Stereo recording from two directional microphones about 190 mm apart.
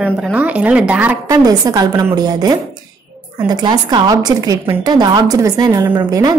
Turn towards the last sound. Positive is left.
turn(degrees=-20)  # may be behind; listen again after turning